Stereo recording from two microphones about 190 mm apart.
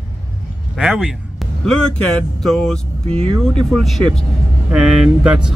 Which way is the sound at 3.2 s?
30° right (ahead or behind).